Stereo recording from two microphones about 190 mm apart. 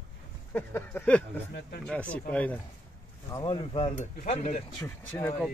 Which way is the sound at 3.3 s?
25° left (ahead or behind).